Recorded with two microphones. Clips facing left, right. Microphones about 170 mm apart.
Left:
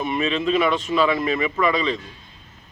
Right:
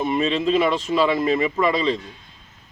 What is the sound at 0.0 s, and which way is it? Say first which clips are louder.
Speech: right 2 dB; 30° right (ahead or behind).